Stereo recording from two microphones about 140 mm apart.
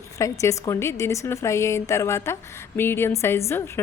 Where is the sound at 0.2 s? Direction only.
20° left (ahead or behind).